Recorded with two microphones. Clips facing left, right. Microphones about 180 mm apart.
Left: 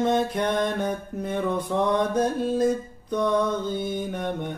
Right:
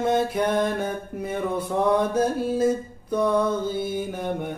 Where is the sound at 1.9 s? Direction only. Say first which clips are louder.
Right 3 dB; 5° right (ahead or behind).